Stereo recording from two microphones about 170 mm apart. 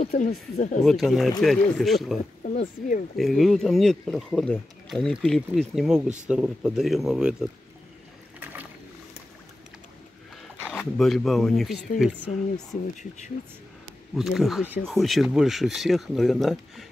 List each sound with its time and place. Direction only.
0.0 s speech: 50° left (ahead or behind)
0.8 s speech: centre (ahead or behind)
2.4 s speech: 45° left (ahead or behind)
3.2 s speech: centre (ahead or behind)
10.6 s speech: centre (ahead or behind)
14.1 s speech: centre (ahead or behind)